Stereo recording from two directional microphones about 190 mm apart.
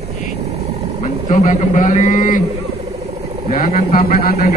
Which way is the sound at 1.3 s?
40° left (ahead or behind).